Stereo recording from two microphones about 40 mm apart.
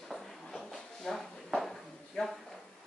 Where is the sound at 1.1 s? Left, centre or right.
Centre.